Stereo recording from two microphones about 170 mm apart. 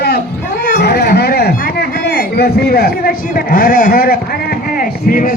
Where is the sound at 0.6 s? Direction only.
65° left (ahead or behind).